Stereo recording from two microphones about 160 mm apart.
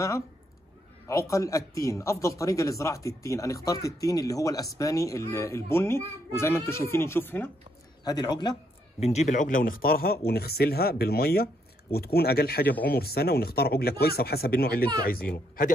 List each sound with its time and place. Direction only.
1.0 s speech: 20° left (ahead or behind)
8.0 s speech: 25° left (ahead or behind)
9.0 s speech: 45° left (ahead or behind); by 15.2 s 70° left (ahead or behind)
15.3 s speech: 60° left (ahead or behind)